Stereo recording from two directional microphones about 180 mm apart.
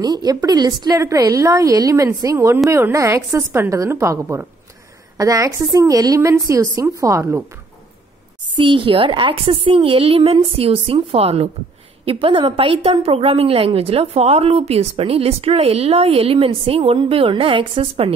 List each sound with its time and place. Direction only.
0.0 s a woman's voice: 20° right (ahead or behind)
8.5 s a woman's voice: 30° right (ahead or behind)